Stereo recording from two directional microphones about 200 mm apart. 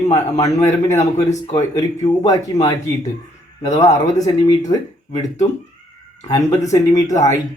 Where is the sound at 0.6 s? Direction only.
15° left (ahead or behind).